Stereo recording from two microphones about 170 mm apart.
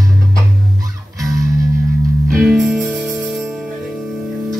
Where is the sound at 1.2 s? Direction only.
20° right (ahead or behind).